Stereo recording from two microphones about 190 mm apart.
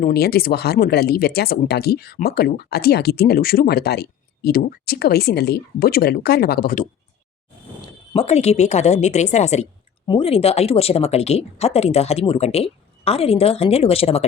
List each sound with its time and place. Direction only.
0.0 s speech: 55° left (ahead or behind)
7.8 s speech: 30° left (ahead or behind)